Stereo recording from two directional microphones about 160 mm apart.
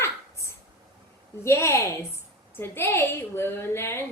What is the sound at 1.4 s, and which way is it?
A woman's voice, 15° left (ahead or behind).